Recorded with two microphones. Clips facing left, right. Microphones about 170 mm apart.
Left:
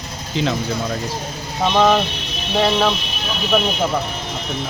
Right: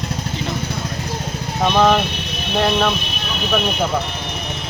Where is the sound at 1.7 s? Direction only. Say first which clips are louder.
Even; centre (ahead or behind).